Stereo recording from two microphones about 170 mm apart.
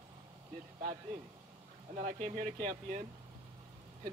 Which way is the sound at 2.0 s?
45° right (ahead or behind).